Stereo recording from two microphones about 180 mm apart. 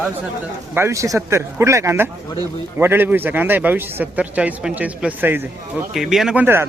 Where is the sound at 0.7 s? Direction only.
15° right (ahead or behind).